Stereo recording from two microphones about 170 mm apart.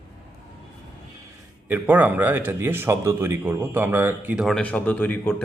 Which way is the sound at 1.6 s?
10° right (ahead or behind).